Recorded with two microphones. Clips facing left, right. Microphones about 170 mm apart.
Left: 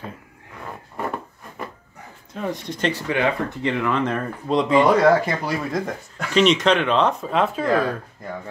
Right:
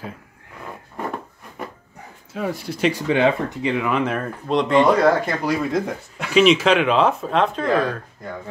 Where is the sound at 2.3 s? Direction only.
5° right (ahead or behind).